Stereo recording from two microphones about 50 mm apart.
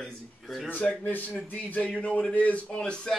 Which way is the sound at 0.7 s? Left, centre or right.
Left.